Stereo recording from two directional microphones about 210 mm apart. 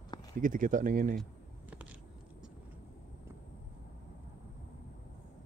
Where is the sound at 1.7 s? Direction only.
5° right (ahead or behind).